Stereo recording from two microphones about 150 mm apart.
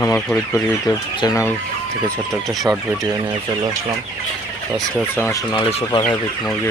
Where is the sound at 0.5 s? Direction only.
20° left (ahead or behind).